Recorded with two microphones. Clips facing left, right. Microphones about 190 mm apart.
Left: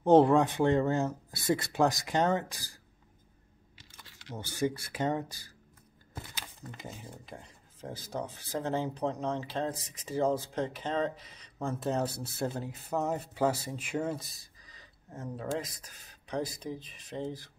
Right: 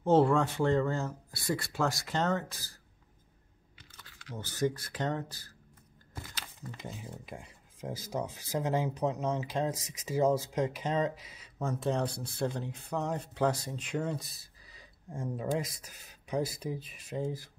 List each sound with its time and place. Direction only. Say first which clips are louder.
0.0 s speech: left 3 dB; 20° left (ahead or behind)
4.4 s speech: even; 10° left (ahead or behind)
7.2 s speech: right 2 dB; 10° right (ahead or behind)